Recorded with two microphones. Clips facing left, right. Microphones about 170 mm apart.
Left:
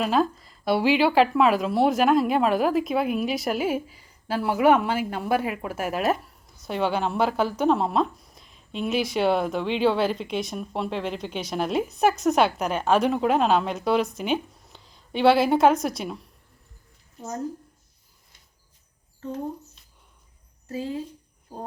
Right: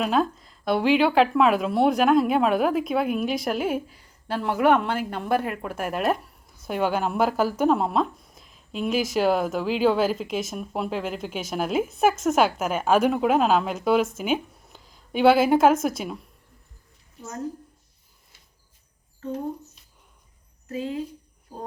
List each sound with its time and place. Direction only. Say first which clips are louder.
0.0 s speech: even; centre (ahead or behind)
20.7 s speech: right 1 dB; 30° left (ahead or behind)